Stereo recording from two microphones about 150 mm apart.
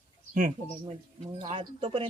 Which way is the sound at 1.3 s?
35° right (ahead or behind).